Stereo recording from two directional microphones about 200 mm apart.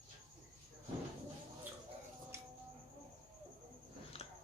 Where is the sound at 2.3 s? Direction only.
15° right (ahead or behind).